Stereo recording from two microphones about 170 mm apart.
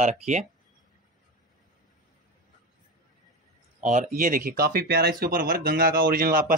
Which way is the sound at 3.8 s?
45° right (ahead or behind).